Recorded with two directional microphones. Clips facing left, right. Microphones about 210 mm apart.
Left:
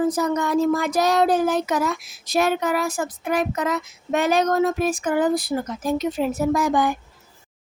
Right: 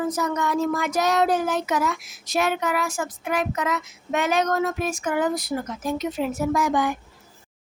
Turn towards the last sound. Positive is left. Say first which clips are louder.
# left 2 dB
turn(degrees=35)  # may be behind; listen again after turning